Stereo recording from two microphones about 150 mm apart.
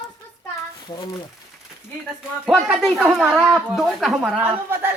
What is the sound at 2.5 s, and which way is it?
Speech, centre (ahead or behind).